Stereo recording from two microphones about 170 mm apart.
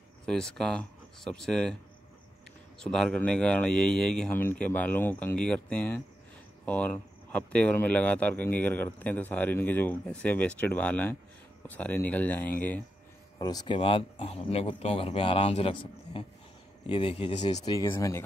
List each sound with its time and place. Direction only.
0.3 s speech: 5° left (ahead or behind)
2.8 s speech: 5° left (ahead or behind)
13.4 s speech: 25° left (ahead or behind)
17.7 s speech: 15° left (ahead or behind)